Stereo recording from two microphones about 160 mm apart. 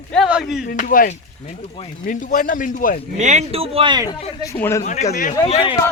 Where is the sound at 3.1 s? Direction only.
45° right (ahead or behind); by 4.1 s 30° right (ahead or behind).